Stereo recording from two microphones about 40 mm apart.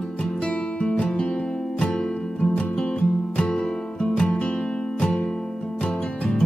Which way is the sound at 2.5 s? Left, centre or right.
Left.